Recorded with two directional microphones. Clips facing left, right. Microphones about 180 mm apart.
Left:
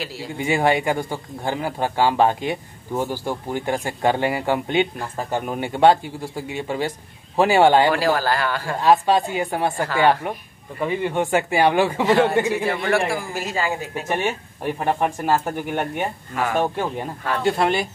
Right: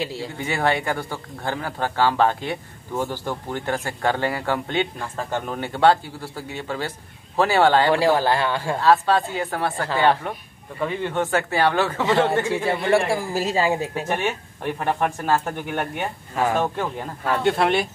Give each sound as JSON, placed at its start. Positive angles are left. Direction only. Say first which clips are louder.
{"t": 0.0, "sound": "a man's voice", "louder": "right 3 dB", "side_deg": -25}
{"t": 0.4, "sound": "speech", "louder": "left 4 dB", "side_deg": 15}
{"t": 7.9, "sound": "a man's voice", "louder": "right 2 dB", "side_deg": -20}
{"t": 8.8, "sound": "speech", "louder": "left 2 dB", "side_deg": 15}
{"t": 12.8, "sound": "a man's voice", "louder": "right 2 dB", "side_deg": -25}
{"t": 14.0, "sound": "speech", "louder": "left 1 dB", "side_deg": 10}
{"t": 17.2, "sound": "speech", "louder": "right 1 dB", "side_deg": 0}